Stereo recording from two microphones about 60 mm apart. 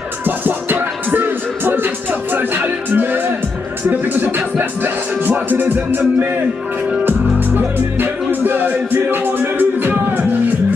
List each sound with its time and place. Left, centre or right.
0.2 s music: right
7.1 s music: right